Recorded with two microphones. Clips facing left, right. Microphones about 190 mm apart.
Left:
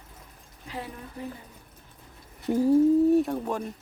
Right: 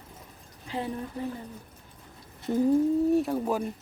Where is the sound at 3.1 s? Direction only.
Centre (ahead or behind).